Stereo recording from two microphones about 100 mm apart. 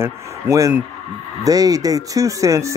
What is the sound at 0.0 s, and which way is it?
Speech, 30° right (ahead or behind).